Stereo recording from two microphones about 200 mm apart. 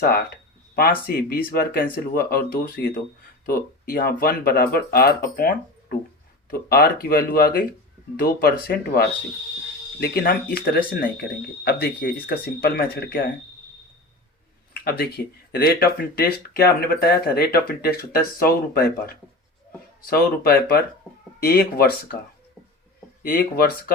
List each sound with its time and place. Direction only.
0.8 s speech: 50° left (ahead or behind)
14.7 s speech: 50° left (ahead or behind)
23.2 s speech: 50° left (ahead or behind)